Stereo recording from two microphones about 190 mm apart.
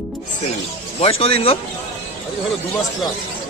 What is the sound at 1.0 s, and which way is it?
Speech, 30° left (ahead or behind).